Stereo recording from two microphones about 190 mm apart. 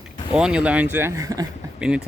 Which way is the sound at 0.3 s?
5° right (ahead or behind).